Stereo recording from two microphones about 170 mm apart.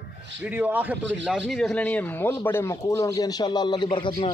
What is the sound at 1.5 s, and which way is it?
A man's voice, 5° left (ahead or behind).